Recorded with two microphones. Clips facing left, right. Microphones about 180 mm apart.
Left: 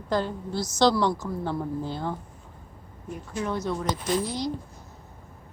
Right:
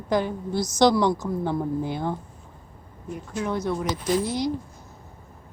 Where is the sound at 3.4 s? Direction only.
15° right (ahead or behind).